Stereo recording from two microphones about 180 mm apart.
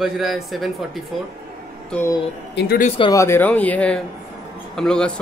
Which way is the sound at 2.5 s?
60° left (ahead or behind).